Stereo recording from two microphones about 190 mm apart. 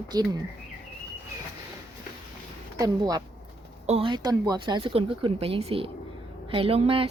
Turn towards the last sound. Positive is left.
turn(degrees=-30)  # may be behind; listen again after turning